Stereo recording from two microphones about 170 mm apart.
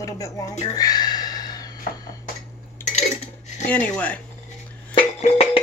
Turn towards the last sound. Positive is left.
turn(degrees=40)  # may be behind; listen again after turning